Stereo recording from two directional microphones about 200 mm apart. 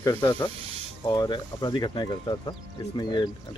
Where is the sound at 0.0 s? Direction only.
20° left (ahead or behind).